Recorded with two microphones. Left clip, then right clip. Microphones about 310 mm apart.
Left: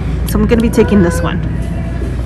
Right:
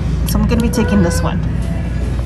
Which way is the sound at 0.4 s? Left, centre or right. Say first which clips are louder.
Left 7 dB; centre.